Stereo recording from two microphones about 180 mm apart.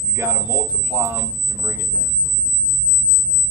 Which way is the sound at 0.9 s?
15° right (ahead or behind).